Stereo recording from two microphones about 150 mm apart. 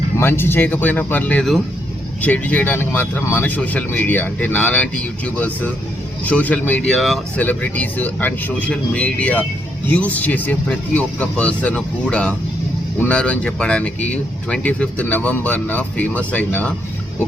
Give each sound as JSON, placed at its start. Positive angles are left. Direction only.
{"t": 0.2, "sound": "speech", "side_deg": 15}